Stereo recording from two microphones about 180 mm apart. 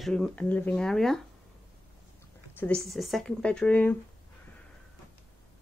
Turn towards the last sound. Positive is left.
turn(degrees=10)  # may be behind; listen again after turning